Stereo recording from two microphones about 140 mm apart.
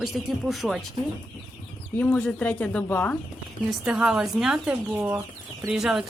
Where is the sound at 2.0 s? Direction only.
10° left (ahead or behind).